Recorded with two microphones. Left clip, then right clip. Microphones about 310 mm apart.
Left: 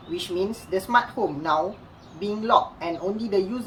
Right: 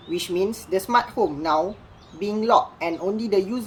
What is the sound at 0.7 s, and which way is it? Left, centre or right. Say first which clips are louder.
Speech: even; right.